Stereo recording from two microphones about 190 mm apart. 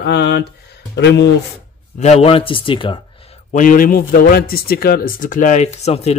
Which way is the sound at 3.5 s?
45° left (ahead or behind).